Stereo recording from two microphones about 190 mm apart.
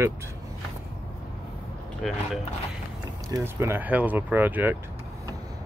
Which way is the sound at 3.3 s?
15° right (ahead or behind).